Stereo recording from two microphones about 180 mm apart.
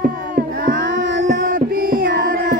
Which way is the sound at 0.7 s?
90° right.